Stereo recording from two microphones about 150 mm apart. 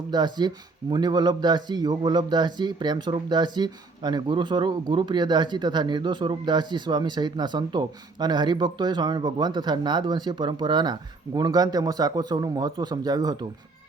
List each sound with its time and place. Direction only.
0.1 s speech: 30° right (ahead or behind)